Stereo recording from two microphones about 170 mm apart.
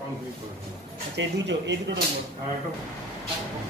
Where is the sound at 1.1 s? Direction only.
90° right.